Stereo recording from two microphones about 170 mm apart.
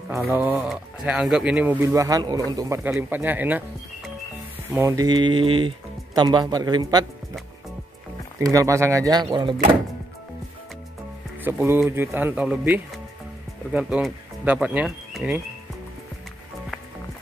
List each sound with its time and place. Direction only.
0.3 s speech: 10° right (ahead or behind)
4.7 s speech: 20° right (ahead or behind)
8.4 s speech: 20° right (ahead or behind)
11.4 s speech: 15° right (ahead or behind)